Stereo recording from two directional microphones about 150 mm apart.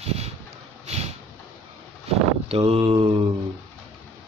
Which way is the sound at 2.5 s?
40° right (ahead or behind).